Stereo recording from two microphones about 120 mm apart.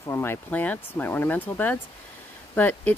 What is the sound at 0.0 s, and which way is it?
Speech, 20° left (ahead or behind).